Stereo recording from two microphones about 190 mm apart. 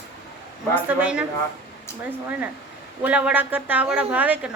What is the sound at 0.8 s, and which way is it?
Speech, 5° right (ahead or behind).